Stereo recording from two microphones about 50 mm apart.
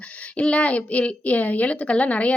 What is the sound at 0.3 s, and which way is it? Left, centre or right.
A woman's voice, left.